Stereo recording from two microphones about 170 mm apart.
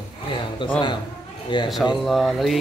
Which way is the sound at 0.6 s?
30° left (ahead or behind).